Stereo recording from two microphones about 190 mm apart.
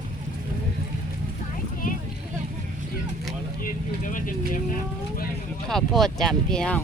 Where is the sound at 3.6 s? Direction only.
45° left (ahead or behind).